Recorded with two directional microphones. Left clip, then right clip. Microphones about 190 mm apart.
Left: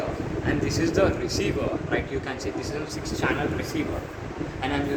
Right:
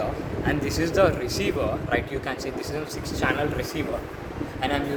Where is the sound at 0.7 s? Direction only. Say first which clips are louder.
Right 2 dB; 40° right (ahead or behind).